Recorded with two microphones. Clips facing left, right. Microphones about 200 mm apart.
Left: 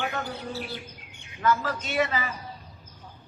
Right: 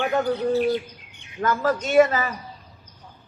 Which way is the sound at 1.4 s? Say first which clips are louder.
Right 4 dB; 45° right (ahead or behind).